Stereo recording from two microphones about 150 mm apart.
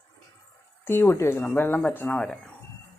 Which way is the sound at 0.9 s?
15° left (ahead or behind).